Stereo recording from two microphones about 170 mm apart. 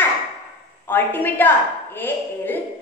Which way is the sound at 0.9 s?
10° left (ahead or behind).